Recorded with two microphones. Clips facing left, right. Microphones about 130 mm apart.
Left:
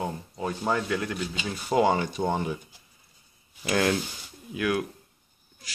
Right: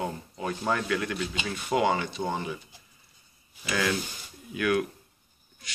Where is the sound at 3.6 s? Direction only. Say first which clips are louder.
Left 4 dB; 45° left (ahead or behind).